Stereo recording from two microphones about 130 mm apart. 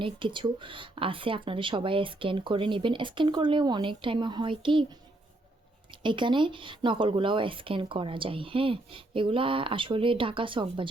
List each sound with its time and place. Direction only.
0.0 s speech: 40° right (ahead or behind)